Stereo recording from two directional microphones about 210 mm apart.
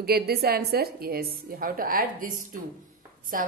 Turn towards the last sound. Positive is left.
turn(degrees=-40)  # may be behind; listen again after turning